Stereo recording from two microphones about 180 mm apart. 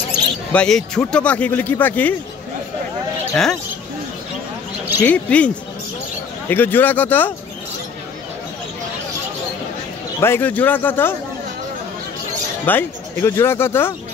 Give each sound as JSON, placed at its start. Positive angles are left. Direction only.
{"t": 0.5, "sound": "speech", "side_deg": 5}
{"t": 5.0, "sound": "speech", "side_deg": 5}
{"t": 10.2, "sound": "speech", "side_deg": 10}
{"t": 12.6, "sound": "speech", "side_deg": 10}